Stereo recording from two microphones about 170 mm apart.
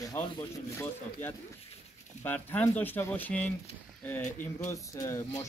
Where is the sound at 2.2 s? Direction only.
10° left (ahead or behind).